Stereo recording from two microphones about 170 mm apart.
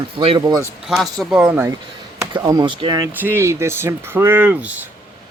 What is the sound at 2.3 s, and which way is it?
Speech, 20° right (ahead or behind).